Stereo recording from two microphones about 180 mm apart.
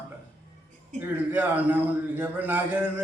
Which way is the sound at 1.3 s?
10° right (ahead or behind).